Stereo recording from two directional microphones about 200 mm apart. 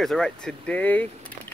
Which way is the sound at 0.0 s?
Centre (ahead or behind).